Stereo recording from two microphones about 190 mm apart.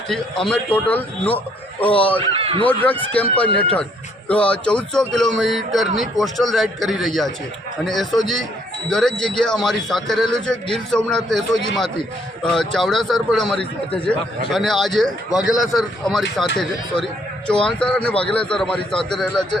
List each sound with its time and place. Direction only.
0.1 s a man's voice: 5° left (ahead or behind)
2.1 s speech: 30° right (ahead or behind)
2.6 s a man's voice: 10° left (ahead or behind)
17.7 s speech: 5° left (ahead or behind)